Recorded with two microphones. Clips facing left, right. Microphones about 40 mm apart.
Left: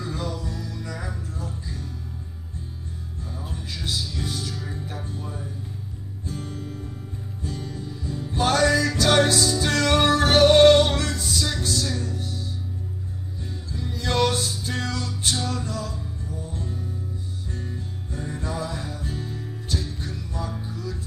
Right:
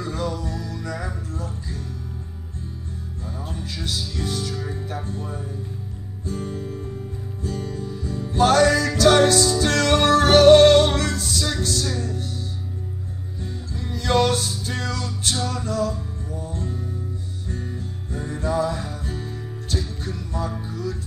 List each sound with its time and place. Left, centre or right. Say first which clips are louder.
0.0 s music: right 3 dB; centre
1.3 s music: right 2 dB; centre
3.4 s music: right 1 dB; centre
4.6 s music: right 4 dB; centre
5.0 s speech: right 3 dB; centre
6.4 s music: right 4 dB; right
7.4 s music: right 4 dB; centre
13.7 s music: right 3 dB; centre
18.1 s music: right 7 dB; centre